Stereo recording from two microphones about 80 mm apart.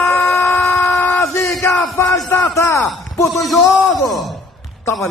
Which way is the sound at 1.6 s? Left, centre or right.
Left.